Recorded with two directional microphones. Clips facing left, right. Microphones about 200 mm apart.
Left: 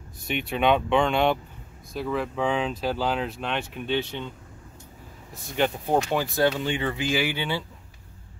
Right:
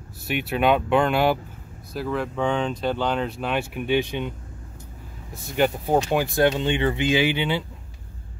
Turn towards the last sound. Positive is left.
turn(degrees=-20)  # may be behind; listen again after turning